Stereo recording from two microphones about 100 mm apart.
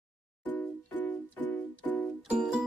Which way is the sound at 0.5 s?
15° left (ahead or behind).